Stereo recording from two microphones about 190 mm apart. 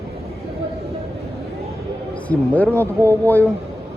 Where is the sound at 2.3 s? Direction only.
10° left (ahead or behind).